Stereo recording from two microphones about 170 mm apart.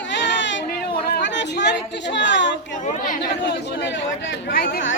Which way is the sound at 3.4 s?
85° left.